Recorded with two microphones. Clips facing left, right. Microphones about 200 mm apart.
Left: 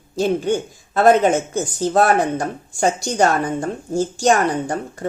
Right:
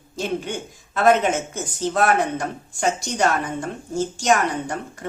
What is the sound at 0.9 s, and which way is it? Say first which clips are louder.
Speech: left 4 dB; 35° left (ahead or behind).